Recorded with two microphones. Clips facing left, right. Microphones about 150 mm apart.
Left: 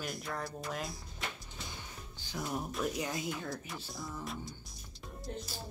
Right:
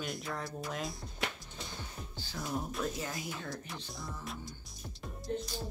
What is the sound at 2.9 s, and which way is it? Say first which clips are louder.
Speech: left 3 dB; 20° left (ahead or behind).